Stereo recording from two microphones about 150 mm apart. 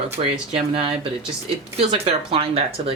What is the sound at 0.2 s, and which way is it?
Speech, 35° right (ahead or behind).